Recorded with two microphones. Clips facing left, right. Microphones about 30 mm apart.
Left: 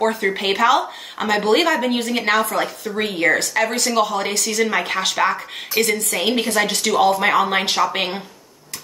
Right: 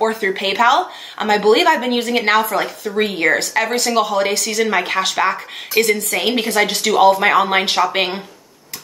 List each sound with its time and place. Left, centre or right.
0.2 s a woman's voice: centre
1.9 s a woman's voice: right